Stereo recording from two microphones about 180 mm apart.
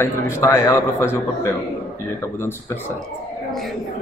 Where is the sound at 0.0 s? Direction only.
15° left (ahead or behind).